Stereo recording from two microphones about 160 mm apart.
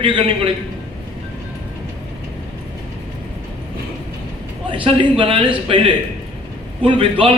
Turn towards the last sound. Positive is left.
turn(degrees=-35)  # may be behind; listen again after turning